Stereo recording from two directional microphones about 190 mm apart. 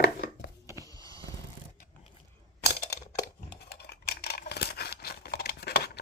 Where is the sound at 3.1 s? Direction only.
50° left (ahead or behind).